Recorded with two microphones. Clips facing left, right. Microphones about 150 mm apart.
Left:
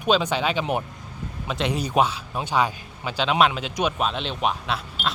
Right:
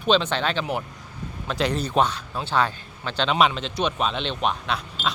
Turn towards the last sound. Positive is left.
turn(degrees=5)  # may be behind; listen again after turning